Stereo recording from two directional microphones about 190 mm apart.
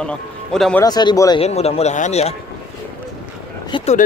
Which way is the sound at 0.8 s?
20° left (ahead or behind).